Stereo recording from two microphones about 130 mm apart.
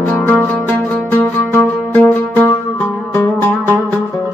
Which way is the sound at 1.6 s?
10° left (ahead or behind).